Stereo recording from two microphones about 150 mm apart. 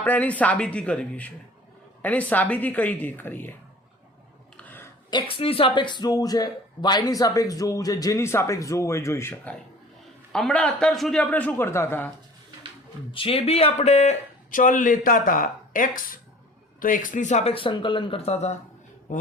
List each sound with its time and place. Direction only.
0.0 s a man's voice: 10° left (ahead or behind)
4.5 s a sound: 10° left (ahead or behind)
5.1 s a man's voice: 35° left (ahead or behind); by 12.1 s 15° left (ahead or behind)
13.1 s speech: 35° left (ahead or behind)